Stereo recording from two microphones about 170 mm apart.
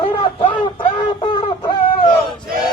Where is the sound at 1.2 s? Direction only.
30° left (ahead or behind).